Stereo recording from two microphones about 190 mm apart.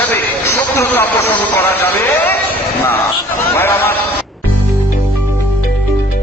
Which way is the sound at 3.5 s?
10° left (ahead or behind).